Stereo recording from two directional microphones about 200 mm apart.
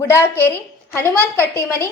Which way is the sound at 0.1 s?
10° left (ahead or behind).